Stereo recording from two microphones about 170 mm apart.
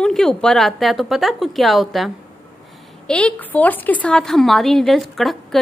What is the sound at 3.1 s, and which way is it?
A woman's voice, 5° left (ahead or behind).